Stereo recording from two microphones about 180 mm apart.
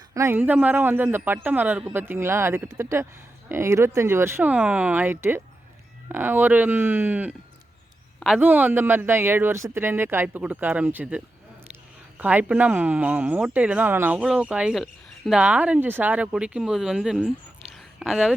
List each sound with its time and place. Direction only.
0.1 s speech: 15° right (ahead or behind)
12.2 s speech: 10° right (ahead or behind)